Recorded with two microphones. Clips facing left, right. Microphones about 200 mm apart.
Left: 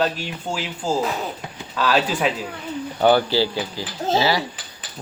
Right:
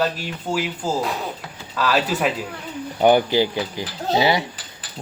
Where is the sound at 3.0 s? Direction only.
15° right (ahead or behind).